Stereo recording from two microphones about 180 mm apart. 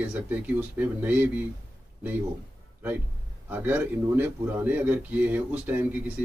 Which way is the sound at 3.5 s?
10° right (ahead or behind).